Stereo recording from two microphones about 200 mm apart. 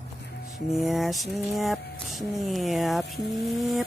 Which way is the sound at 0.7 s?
Centre (ahead or behind).